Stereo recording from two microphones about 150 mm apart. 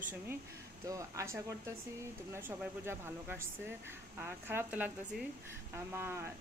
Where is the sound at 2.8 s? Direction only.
15° right (ahead or behind).